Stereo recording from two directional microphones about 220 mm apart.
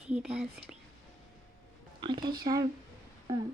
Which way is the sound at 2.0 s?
20° right (ahead or behind).